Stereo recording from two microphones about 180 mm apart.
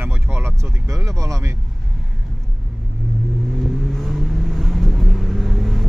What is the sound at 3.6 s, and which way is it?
Vehicle, centre (ahead or behind).